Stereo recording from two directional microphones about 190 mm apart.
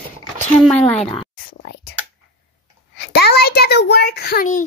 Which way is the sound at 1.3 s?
55° left (ahead or behind).